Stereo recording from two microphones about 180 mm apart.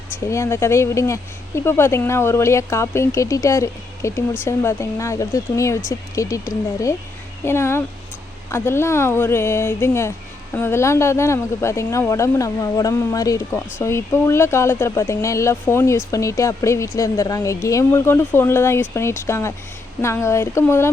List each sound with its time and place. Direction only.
0.1 s speech: 15° left (ahead or behind)